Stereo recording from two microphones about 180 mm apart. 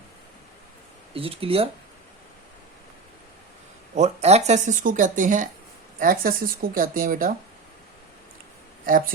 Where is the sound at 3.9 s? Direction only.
40° right (ahead or behind).